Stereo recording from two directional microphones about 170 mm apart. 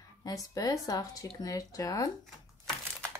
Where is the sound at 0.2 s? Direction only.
20° left (ahead or behind).